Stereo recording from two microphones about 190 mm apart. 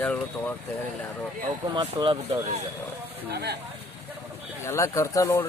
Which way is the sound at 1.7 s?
25° right (ahead or behind).